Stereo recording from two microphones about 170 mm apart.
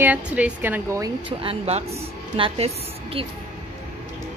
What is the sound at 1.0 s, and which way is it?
A woman's voice, 30° right (ahead or behind).